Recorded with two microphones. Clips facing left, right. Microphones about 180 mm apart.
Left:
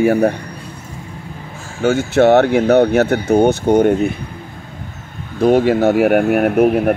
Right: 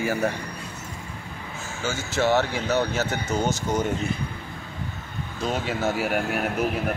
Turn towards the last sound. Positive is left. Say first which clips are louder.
# left 13 dB
turn(degrees=55)  # may be behind; listen again after turning